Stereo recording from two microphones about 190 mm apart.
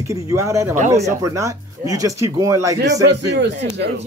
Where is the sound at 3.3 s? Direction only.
65° right (ahead or behind).